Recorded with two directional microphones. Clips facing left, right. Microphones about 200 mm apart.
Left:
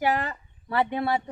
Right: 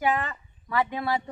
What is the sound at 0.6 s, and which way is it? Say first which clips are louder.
Speech: left 2 dB; 30° left (ahead or behind).